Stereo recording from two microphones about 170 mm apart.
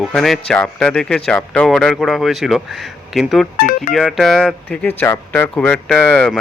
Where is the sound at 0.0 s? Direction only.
Centre (ahead or behind).